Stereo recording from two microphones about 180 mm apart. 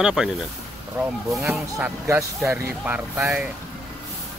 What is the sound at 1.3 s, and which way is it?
Speech, 5° right (ahead or behind).